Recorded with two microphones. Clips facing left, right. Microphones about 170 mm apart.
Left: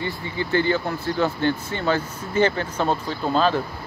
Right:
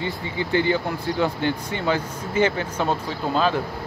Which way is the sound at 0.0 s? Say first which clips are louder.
Even; 15° right (ahead or behind).